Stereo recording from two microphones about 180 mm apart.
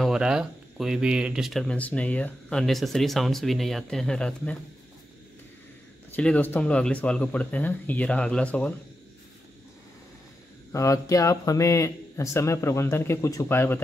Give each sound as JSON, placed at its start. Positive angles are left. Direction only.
{"t": 0.0, "sound": "speech", "side_deg": -5}
{"t": 6.1, "sound": "a man's voice", "side_deg": 10}
{"t": 10.7, "sound": "a man's voice", "side_deg": 15}